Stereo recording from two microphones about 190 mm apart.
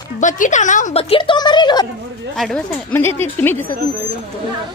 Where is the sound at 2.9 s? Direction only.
10° left (ahead or behind).